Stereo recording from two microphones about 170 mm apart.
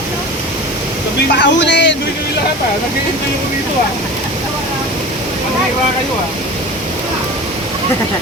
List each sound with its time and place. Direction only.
1.3 s speech: 90° left